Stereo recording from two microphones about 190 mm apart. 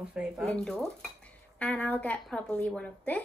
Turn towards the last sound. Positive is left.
turn(degrees=10)  # may be behind; listen again after turning